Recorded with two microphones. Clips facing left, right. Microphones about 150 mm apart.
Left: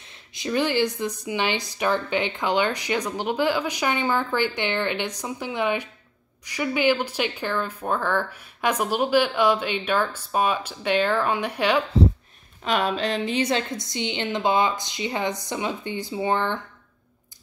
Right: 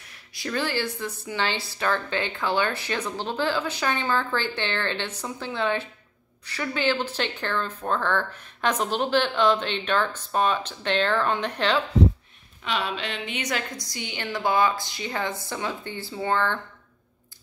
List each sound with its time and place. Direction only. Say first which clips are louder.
0.1 s a woman's voice: left 4 dB; 20° left (ahead or behind)
12.6 s a woman's voice: left 5 dB; 45° left (ahead or behind); by 16.5 s 15° left (ahead or behind)